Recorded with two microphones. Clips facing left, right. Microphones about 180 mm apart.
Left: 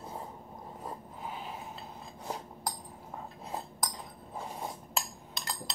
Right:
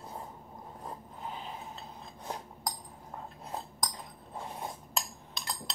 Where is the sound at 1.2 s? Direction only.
5° left (ahead or behind).